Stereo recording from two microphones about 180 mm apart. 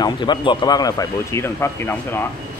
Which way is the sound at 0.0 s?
25° left (ahead or behind).